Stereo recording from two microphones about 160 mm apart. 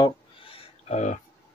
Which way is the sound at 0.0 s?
35° left (ahead or behind).